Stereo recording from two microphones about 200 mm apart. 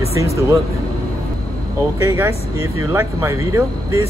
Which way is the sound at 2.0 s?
15° right (ahead or behind).